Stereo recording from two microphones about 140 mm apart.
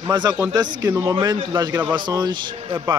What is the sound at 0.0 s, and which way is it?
A man's voice, 30° right (ahead or behind).